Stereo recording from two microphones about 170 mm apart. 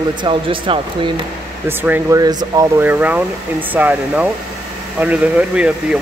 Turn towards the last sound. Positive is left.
turn(degrees=-5)  # may be behind; listen again after turning